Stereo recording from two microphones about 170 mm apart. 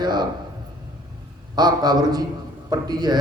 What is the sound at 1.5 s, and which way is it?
A man's voice, 25° right (ahead or behind).